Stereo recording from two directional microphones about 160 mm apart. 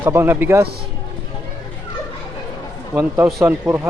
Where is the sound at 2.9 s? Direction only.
10° right (ahead or behind).